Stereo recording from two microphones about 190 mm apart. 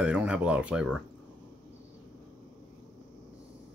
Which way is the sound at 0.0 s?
5° right (ahead or behind).